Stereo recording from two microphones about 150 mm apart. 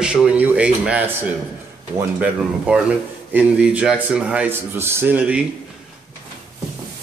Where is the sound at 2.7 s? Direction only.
10° right (ahead or behind).